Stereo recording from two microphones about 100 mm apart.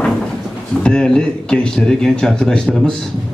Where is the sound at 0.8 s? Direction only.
5° left (ahead or behind).